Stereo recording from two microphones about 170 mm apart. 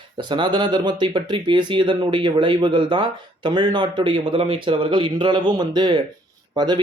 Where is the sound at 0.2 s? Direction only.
25° right (ahead or behind).